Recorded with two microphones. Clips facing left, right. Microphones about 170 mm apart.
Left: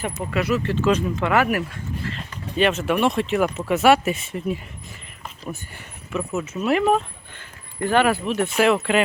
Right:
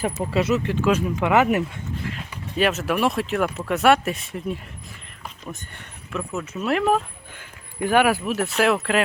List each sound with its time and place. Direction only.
0.3 s speech: 25° right (ahead or behind)
2.1 s speech: 5° right (ahead or behind)